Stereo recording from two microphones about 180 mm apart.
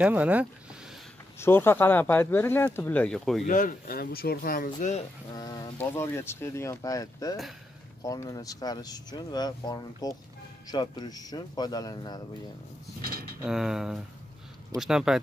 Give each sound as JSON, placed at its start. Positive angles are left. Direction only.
{"t": 0.0, "sound": "speech", "side_deg": -10}
{"t": 1.4, "sound": "speech", "side_deg": 10}
{"t": 3.4, "sound": "speech", "side_deg": 50}
{"t": 5.3, "sound": "speech", "side_deg": 20}
{"t": 13.4, "sound": "speech", "side_deg": -5}